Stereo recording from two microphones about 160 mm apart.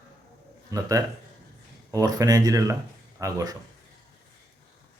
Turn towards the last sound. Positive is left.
turn(degrees=-25)  # may be behind; listen again after turning